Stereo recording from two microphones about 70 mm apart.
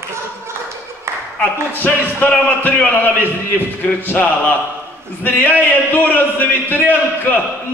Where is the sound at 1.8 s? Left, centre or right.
Left.